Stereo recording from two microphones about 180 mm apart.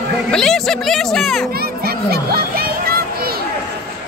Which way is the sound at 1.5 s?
60° right (ahead or behind).